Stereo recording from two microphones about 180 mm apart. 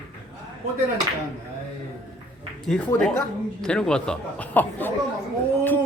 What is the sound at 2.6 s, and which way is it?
Speech, centre (ahead or behind).